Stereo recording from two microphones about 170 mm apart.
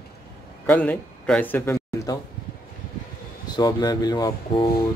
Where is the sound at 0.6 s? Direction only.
10° left (ahead or behind).